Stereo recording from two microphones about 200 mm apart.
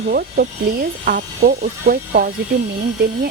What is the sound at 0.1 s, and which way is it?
Speech, 50° right (ahead or behind).